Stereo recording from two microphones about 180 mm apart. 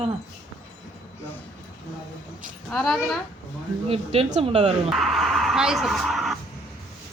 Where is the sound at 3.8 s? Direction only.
35° right (ahead or behind).